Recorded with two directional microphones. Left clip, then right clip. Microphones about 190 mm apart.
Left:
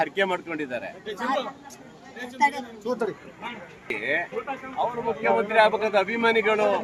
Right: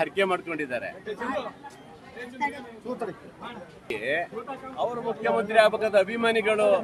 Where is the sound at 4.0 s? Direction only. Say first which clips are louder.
Left 1 dB; 10° right (ahead or behind).